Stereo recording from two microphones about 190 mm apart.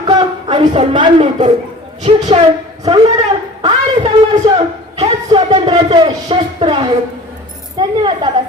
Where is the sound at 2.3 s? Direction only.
30° right (ahead or behind).